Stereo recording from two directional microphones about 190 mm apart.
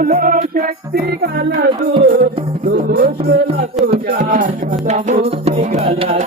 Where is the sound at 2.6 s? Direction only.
50° right (ahead or behind).